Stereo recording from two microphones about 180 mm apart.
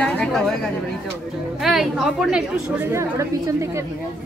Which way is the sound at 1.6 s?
Centre (ahead or behind).